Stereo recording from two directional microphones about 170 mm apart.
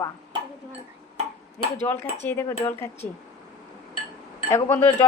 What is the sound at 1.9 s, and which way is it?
Speech, 10° left (ahead or behind).